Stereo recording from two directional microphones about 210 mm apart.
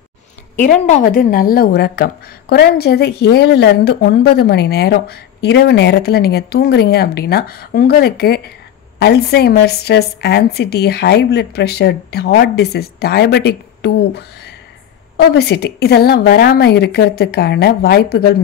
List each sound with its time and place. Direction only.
0.6 s a woman's voice: 35° left (ahead or behind)